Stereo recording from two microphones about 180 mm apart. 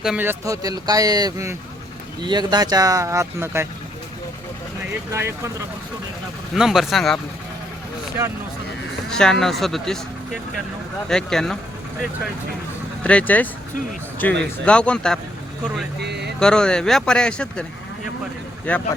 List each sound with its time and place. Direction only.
0.0 s speech: 5° right (ahead or behind)
5.1 s speech: 15° right (ahead or behind)
6.5 s speech: centre (ahead or behind)
9.0 s speech: 5° left (ahead or behind)
11.1 s speech: 5° left (ahead or behind)
13.0 s speech: 5° left (ahead or behind)
16.0 s speech: 70° right (ahead or behind)
16.4 s speech: 5° left (ahead or behind)
18.7 s speech: 5° left (ahead or behind)